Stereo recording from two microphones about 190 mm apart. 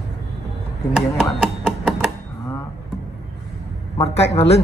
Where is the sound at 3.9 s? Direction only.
30° left (ahead or behind).